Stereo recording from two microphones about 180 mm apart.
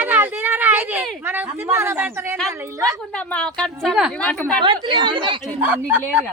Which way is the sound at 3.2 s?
5° left (ahead or behind).